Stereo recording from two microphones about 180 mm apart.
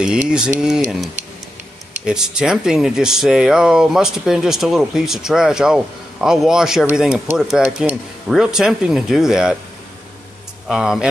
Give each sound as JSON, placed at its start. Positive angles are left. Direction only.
{"t": 0.3, "sound": "speech", "side_deg": -5}
{"t": 2.0, "sound": "speech", "side_deg": -5}
{"t": 10.7, "sound": "speech", "side_deg": -5}